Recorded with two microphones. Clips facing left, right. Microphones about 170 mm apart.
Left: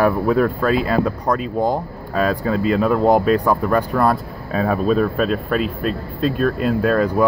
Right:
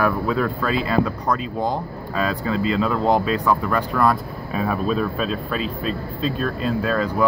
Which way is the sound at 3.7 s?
35° left (ahead or behind).